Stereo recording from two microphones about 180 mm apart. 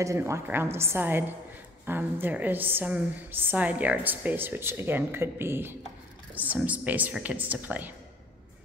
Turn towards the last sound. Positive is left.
turn(degrees=-10)  # may be behind; listen again after turning